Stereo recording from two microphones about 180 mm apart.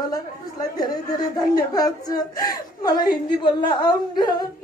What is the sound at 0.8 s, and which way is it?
Speech, 20° left (ahead or behind).